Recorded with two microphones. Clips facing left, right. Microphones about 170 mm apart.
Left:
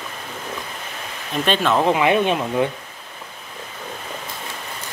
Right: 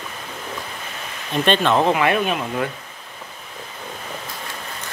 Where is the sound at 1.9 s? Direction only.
15° left (ahead or behind).